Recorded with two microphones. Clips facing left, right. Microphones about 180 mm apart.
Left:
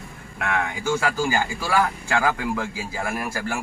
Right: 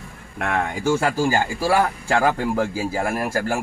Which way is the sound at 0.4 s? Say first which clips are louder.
Right 3 dB; 40° right (ahead or behind).